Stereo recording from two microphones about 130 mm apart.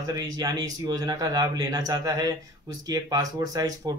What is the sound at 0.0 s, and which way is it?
Speech, 30° right (ahead or behind).